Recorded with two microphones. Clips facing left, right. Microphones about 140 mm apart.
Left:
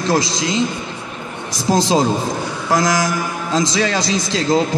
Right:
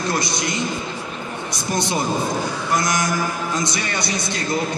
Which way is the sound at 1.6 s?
90° left.